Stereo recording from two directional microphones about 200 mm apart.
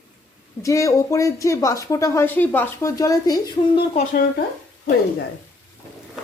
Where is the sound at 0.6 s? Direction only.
15° left (ahead or behind).